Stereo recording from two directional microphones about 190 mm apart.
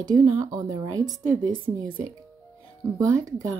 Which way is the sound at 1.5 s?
45° right (ahead or behind).